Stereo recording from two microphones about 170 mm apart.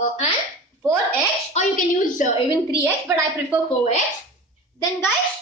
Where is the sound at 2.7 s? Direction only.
15° left (ahead or behind).